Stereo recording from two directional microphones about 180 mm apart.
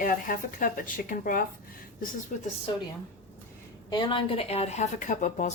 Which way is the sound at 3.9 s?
25° left (ahead or behind).